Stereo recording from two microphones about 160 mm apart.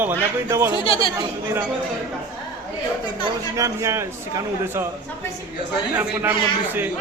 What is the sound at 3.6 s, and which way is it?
Speech, 20° right (ahead or behind).